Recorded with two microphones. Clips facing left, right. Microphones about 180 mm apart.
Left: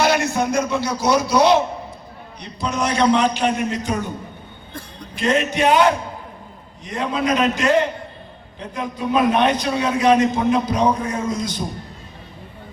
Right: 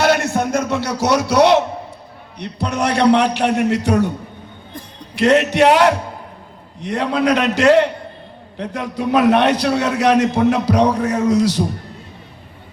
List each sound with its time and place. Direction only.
0.0 s a man's voice: 60° right (ahead or behind)
5.1 s a man's voice: 75° right (ahead or behind)